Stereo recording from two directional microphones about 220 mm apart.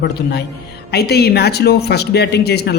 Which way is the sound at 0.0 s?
50° left (ahead or behind).